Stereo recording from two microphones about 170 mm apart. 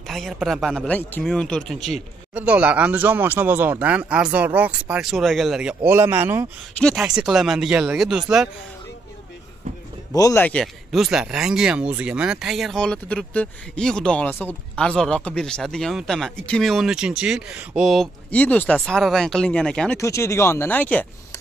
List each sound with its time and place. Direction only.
0.1 s speech: centre (ahead or behind)
5.9 s speech: 15° right (ahead or behind)
6.7 s speech: 5° left (ahead or behind)
10.1 s speech: 15° left (ahead or behind)
20.0 s speech: 15° left (ahead or behind)